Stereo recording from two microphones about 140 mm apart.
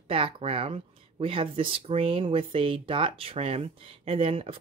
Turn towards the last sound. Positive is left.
turn(degrees=-40)  # may be behind; listen again after turning